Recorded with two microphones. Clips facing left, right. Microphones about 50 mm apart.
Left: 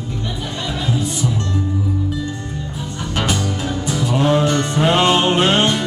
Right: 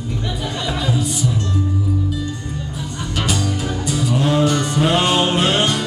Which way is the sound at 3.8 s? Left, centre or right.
Left.